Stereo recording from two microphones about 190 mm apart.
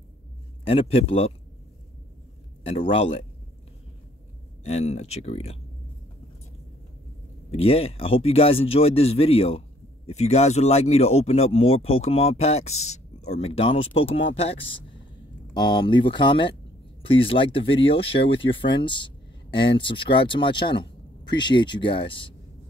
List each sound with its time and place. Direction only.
0.7 s speech: 30° left (ahead or behind)
2.6 s speech: 30° left (ahead or behind)
4.6 s speech: 35° left (ahead or behind)
7.5 s speech: 30° left (ahead or behind)